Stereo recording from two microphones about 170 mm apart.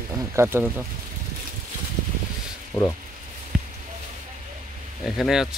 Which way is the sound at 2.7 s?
25° left (ahead or behind).